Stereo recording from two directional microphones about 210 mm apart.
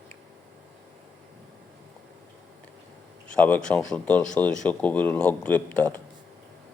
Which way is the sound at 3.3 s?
5° left (ahead or behind).